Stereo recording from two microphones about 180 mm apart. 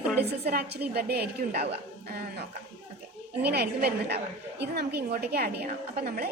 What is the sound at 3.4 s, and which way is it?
A woman's voice, 65° right (ahead or behind).